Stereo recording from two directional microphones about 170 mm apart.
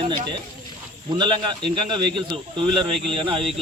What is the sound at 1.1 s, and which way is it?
Speech, 30° right (ahead or behind).